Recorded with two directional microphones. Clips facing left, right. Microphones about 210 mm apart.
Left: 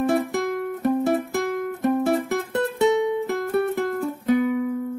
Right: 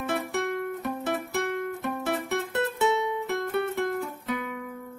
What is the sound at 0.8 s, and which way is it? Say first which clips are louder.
Music: left 9 dB; 45° left (ahead or behind).